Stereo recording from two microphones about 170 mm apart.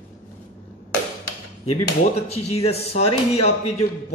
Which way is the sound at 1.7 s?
35° left (ahead or behind).